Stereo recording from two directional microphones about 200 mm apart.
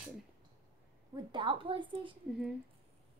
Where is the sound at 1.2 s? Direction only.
25° right (ahead or behind).